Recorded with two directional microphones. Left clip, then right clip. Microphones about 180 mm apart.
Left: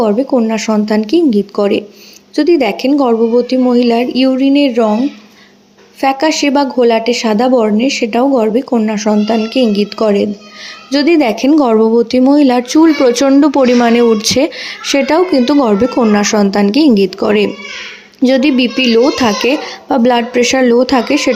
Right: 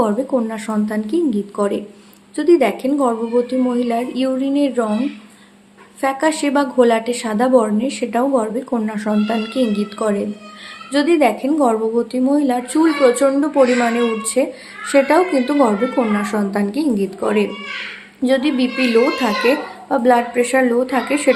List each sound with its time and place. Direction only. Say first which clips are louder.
0.0 s speech: left 6 dB; 30° left (ahead or behind)
6.0 s speech: left 6 dB; 35° left (ahead or behind)